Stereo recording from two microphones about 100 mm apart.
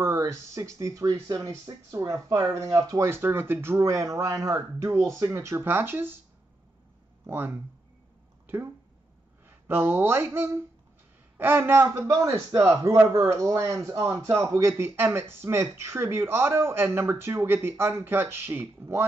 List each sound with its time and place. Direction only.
0.0 s a man's voice: 30° right (ahead or behind)
3.1 s a man's voice: 25° right (ahead or behind)
7.2 s a man's voice: 20° right (ahead or behind)
9.5 s speech: 20° right (ahead or behind)
11.6 s a man's voice: 25° right (ahead or behind)
13.3 s a man's voice: 35° right (ahead or behind)